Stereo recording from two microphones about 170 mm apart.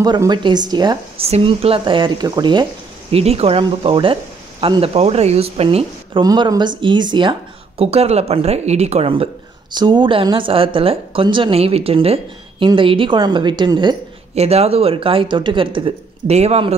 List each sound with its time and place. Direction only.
0.0 s a woman's voice: 25° right (ahead or behind)
1.2 s a woman's voice: 35° right (ahead or behind)
3.1 s speech: 35° right (ahead or behind)
6.2 s speech: 25° right (ahead or behind)
14.3 s speech: 40° right (ahead or behind)